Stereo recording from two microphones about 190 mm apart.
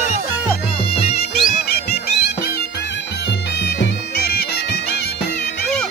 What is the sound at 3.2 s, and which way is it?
Bagpipes, 65° left (ahead or behind).